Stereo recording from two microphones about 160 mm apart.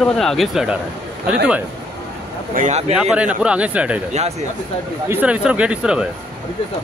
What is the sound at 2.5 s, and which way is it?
Speech, 50° right (ahead or behind).